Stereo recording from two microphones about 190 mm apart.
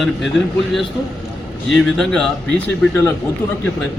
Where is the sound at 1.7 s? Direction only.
Centre (ahead or behind).